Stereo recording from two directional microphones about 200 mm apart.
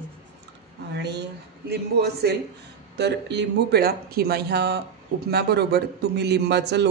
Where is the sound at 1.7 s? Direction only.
55° right (ahead or behind).